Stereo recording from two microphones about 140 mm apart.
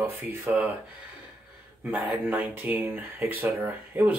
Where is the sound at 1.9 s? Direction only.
10° right (ahead or behind).